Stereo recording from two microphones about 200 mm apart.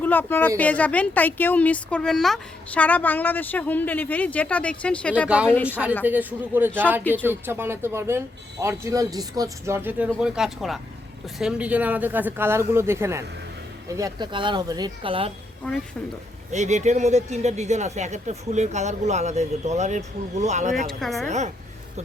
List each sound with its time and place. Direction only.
0.0 s speech: 10° left (ahead or behind)
6.1 s speech: 10° right (ahead or behind); by 15.3 s 25° right (ahead or behind)
15.6 s speech: 5° left (ahead or behind)
16.5 s speech: 35° right (ahead or behind)
20.8 s speech: centre (ahead or behind)
21.2 s speech: 35° right (ahead or behind)